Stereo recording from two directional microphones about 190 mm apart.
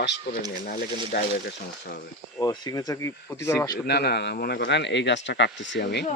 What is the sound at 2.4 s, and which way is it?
Speech, 20° left (ahead or behind).